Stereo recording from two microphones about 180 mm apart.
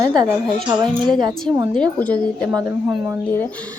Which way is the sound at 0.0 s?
25° right (ahead or behind).